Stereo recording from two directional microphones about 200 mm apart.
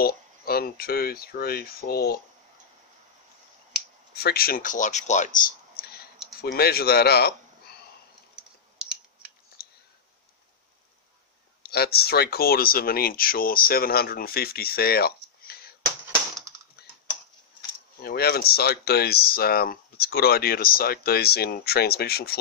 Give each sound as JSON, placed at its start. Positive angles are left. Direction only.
{"t": 0.0, "sound": "speech", "side_deg": 50}
{"t": 4.1, "sound": "speech", "side_deg": 50}
{"t": 8.7, "sound": "scissors", "side_deg": -5}
{"t": 9.6, "sound": "a sound", "side_deg": 50}
{"t": 11.6, "sound": "speech", "side_deg": 50}
{"t": 16.8, "sound": "typing", "side_deg": 50}
{"t": 18.0, "sound": "speech", "side_deg": 50}